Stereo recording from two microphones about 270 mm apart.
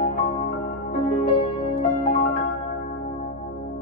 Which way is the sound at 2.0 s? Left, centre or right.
Left.